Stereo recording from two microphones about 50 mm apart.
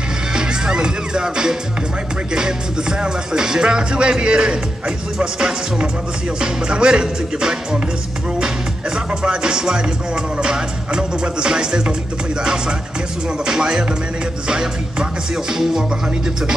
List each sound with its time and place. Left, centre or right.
0.3 s music: centre
3.0 s speech: centre
8.9 s speech: centre
13.5 s speech: centre